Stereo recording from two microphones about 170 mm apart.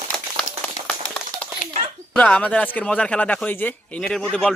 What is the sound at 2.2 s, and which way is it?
Speech, 5° left (ahead or behind).